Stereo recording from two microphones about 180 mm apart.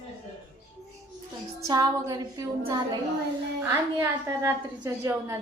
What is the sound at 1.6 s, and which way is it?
Speech, 20° right (ahead or behind).